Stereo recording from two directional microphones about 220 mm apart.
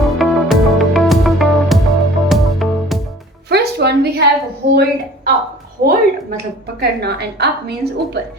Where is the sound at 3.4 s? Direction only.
50° right (ahead or behind).